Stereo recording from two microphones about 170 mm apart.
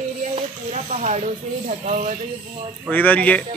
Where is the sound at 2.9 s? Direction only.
10° left (ahead or behind).